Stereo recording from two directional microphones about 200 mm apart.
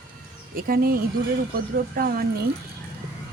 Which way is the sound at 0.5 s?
45° right (ahead or behind).